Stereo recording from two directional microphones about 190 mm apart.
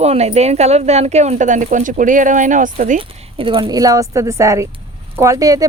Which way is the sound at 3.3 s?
30° right (ahead or behind).